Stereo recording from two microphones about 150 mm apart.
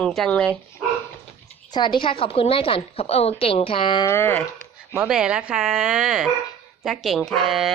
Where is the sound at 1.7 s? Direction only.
30° left (ahead or behind).